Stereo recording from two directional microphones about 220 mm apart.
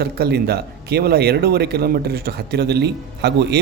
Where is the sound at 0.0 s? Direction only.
45° right (ahead or behind).